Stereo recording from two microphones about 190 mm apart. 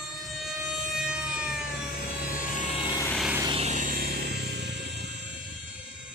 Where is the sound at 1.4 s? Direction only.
55° left (ahead or behind); by 2.9 s 35° left (ahead or behind).